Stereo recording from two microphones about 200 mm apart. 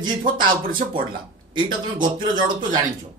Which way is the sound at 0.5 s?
45° right (ahead or behind).